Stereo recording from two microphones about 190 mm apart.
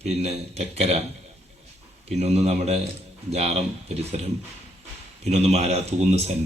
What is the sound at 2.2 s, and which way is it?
Speech, 35° right (ahead or behind).